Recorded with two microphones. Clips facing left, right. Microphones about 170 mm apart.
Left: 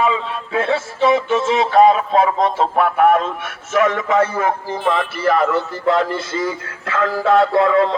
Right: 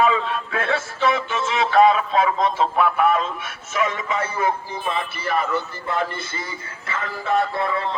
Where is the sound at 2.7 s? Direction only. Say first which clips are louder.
Left 6 dB; 60° left (ahead or behind).